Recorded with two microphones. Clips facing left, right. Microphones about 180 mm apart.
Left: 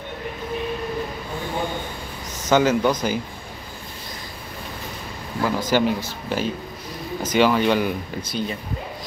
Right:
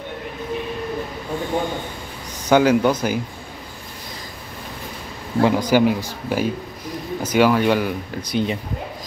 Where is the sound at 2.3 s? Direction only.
10° right (ahead or behind).